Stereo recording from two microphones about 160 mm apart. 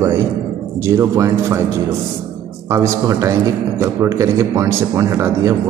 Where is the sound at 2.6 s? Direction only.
20° right (ahead or behind).